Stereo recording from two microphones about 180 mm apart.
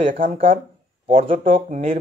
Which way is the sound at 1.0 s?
30° right (ahead or behind).